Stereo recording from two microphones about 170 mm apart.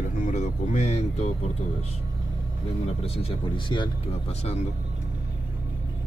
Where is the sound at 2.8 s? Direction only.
35° left (ahead or behind).